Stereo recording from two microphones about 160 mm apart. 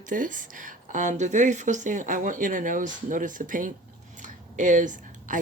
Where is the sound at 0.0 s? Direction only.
55° right (ahead or behind).